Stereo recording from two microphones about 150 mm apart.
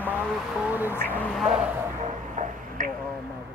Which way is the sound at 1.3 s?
5° right (ahead or behind).